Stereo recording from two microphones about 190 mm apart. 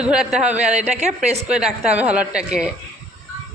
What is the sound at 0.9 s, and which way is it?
Speech, 35° right (ahead or behind).